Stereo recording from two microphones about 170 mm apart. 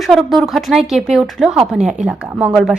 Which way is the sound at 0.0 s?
Centre (ahead or behind).